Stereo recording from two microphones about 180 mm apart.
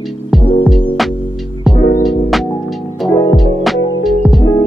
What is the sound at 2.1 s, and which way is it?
Music, centre (ahead or behind).